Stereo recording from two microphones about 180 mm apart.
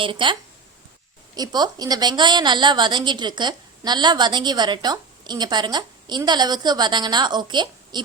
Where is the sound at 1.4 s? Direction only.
20° right (ahead or behind).